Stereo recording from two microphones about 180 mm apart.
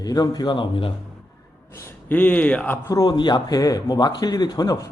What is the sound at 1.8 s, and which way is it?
Speech, 10° left (ahead or behind).